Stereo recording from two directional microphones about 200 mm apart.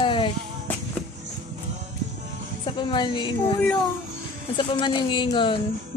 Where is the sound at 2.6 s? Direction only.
25° left (ahead or behind).